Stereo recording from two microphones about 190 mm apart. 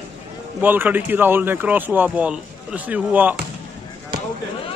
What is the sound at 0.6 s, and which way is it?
Speech, 10° right (ahead or behind).